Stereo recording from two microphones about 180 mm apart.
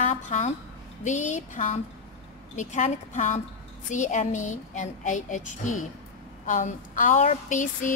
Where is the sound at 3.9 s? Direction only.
40° left (ahead or behind).